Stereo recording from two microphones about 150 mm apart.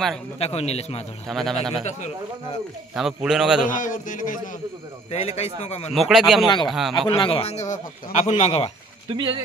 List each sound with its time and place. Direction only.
0.4 s speech: 45° left (ahead or behind)
1.3 s a man's voice: centre (ahead or behind)
1.9 s speech: 50° left (ahead or behind)
3.0 s a man's voice: centre (ahead or behind)
3.6 s speech: 60° left (ahead or behind)
5.1 s speech: 45° left (ahead or behind)
5.9 s a man's voice: centre (ahead or behind)
7.1 s speech: 35° left (ahead or behind)
9.1 s speech: 30° right (ahead or behind)